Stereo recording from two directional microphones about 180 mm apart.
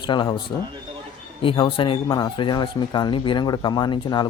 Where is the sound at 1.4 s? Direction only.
30° left (ahead or behind).